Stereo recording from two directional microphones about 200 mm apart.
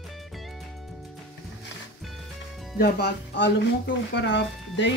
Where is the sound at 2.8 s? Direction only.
55° left (ahead or behind).